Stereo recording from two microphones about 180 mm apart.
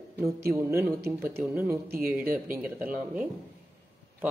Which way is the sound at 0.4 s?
15° right (ahead or behind).